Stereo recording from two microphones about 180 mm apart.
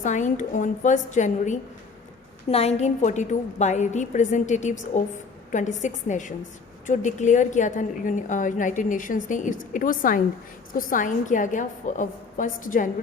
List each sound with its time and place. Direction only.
0.0 s a woman's voice: 45° left (ahead or behind)